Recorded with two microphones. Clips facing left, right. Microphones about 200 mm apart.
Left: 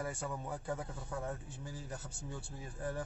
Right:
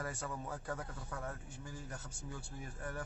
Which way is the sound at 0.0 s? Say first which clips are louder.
Left 2 dB; 15° left (ahead or behind).